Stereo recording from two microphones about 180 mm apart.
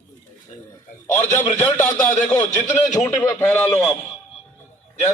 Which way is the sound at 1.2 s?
15° left (ahead or behind).